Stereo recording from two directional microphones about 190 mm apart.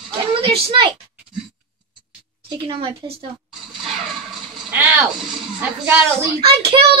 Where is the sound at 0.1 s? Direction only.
30° right (ahead or behind).